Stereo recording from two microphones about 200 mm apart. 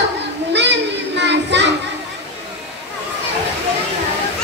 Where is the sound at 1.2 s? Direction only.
60° right (ahead or behind).